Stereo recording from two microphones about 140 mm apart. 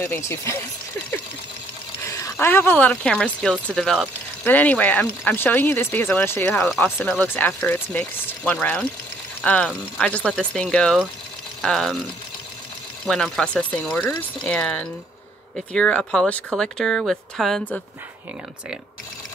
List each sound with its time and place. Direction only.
0.2 s speech: 20° left (ahead or behind)
2.0 s speech: 20° left (ahead or behind)
7.0 s speech: 5° left (ahead or behind)
13.0 s speech: 5° left (ahead or behind)